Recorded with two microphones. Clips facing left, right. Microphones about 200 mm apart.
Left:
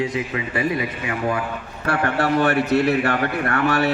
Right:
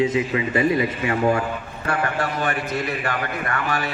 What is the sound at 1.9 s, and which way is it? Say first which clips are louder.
A man's voice: left 4 dB; 65° left (ahead or behind).